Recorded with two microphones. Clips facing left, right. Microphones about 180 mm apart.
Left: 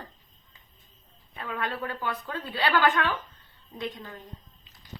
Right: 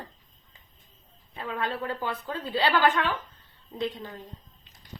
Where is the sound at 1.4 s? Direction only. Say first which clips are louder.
Right 1 dB; 25° right (ahead or behind).